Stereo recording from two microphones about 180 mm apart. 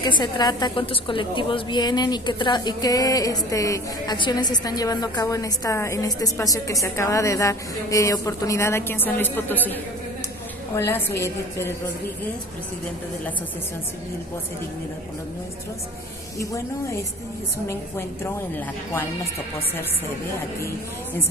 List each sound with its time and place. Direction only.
0.0 s a woman's voice: 25° left (ahead or behind)
16.3 s a woman's voice: 15° left (ahead or behind)